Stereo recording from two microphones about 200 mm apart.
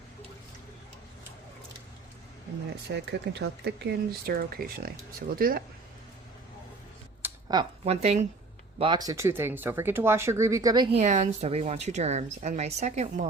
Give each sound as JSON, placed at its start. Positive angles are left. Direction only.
{"t": 2.9, "sound": "speech", "side_deg": -60}
{"t": 7.4, "sound": "speech", "side_deg": -20}
{"t": 8.8, "sound": "speech", "side_deg": -20}
{"t": 10.9, "sound": "speech", "side_deg": -35}